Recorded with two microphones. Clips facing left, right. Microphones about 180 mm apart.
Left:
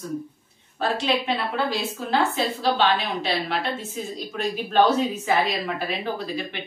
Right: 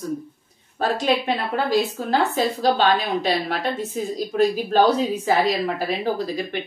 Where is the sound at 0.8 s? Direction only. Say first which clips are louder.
Right 3 dB; 40° right (ahead or behind).